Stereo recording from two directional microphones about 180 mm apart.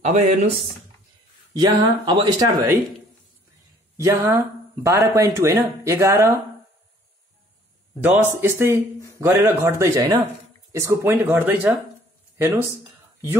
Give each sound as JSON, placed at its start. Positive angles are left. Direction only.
{"t": 0.0, "sound": "speech", "side_deg": -40}
{"t": 1.5, "sound": "speech", "side_deg": -25}
{"t": 3.9, "sound": "speech", "side_deg": -15}
{"t": 8.0, "sound": "speech", "side_deg": -10}